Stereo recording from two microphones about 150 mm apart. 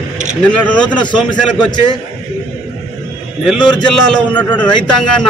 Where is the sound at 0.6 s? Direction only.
10° left (ahead or behind).